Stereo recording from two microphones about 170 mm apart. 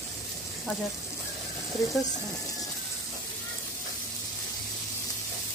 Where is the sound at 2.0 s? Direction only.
20° left (ahead or behind).